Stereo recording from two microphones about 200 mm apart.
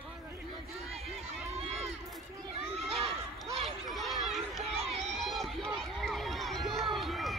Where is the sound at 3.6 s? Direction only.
Centre (ahead or behind).